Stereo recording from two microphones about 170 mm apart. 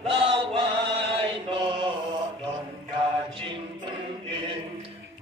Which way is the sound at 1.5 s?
30° right (ahead or behind).